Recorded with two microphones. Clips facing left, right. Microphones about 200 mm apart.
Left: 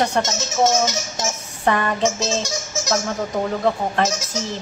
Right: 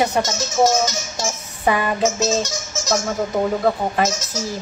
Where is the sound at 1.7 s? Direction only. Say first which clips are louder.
Right 1 dB; 5° right (ahead or behind).